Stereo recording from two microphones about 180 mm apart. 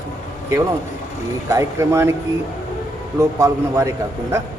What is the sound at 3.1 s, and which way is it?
Speech, 15° right (ahead or behind).